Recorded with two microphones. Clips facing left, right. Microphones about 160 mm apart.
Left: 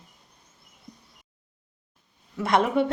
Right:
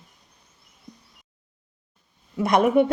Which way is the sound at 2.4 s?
15° right (ahead or behind).